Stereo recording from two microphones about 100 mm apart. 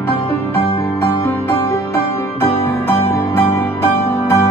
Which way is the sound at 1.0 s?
25° left (ahead or behind).